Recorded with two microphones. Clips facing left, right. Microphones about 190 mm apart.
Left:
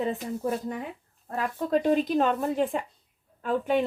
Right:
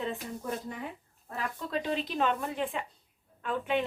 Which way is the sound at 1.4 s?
45° left (ahead or behind).